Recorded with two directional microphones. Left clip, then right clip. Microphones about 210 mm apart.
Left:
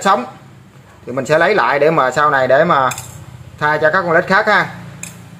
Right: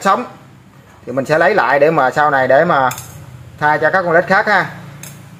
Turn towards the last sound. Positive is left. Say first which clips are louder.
# even
turn(degrees=-5)  # may be behind; listen again after turning